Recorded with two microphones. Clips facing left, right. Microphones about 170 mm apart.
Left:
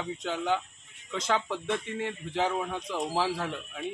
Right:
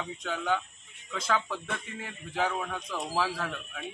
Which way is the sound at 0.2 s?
25° left (ahead or behind).